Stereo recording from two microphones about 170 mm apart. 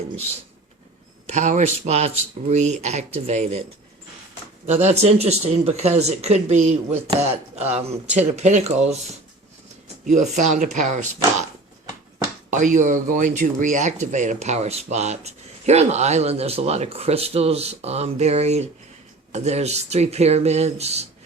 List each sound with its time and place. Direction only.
1.3 s speech: 45° right (ahead or behind)
4.6 s speech: 40° right (ahead or behind)
10.1 s speech: 45° right (ahead or behind)
12.5 s speech: 45° right (ahead or behind)